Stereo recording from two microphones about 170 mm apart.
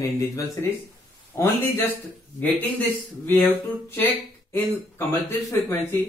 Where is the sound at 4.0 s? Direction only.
10° left (ahead or behind).